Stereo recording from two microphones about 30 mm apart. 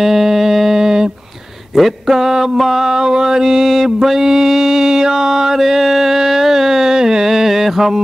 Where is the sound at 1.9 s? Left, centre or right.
Centre.